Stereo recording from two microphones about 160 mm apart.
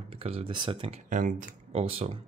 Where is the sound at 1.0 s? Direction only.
50° right (ahead or behind).